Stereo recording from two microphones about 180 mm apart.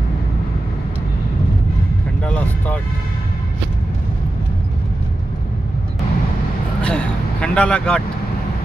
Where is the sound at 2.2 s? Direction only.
5° left (ahead or behind).